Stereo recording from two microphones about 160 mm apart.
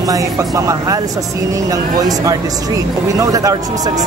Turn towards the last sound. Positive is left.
turn(degrees=-20)  # may be behind; listen again after turning